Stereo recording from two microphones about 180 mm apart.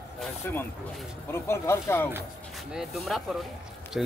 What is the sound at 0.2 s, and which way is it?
Speech, 10° left (ahead or behind).